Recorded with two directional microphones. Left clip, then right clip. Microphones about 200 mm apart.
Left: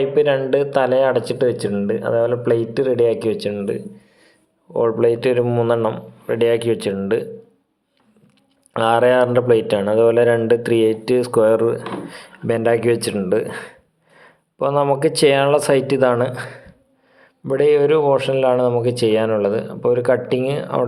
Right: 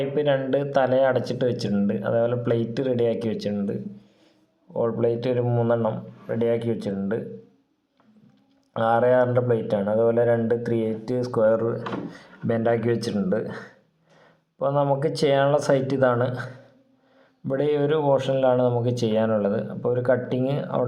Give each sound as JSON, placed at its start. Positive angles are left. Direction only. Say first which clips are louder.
{"t": 0.0, "sound": "a man's voice", "louder": "left 7 dB", "side_deg": 30}
{"t": 9.0, "sound": "a man's voice", "louder": "left 6 dB", "side_deg": 35}
{"t": 17.5, "sound": "speech", "louder": "left 8 dB", "side_deg": 20}